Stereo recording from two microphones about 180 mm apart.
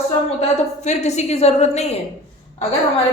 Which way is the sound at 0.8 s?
40° left (ahead or behind).